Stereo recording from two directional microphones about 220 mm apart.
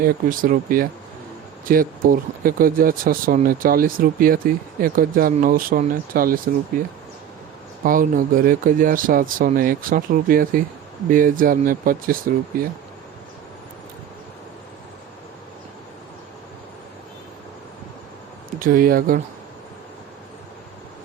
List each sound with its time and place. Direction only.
0.0 s speech: 40° right (ahead or behind)
7.9 s speech: 40° right (ahead or behind)
18.6 s speech: 40° right (ahead or behind)